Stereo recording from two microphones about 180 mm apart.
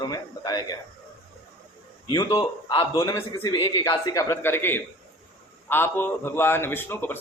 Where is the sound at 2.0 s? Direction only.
20° left (ahead or behind).